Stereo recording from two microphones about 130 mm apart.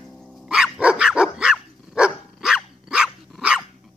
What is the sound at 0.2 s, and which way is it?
Dog, centre (ahead or behind).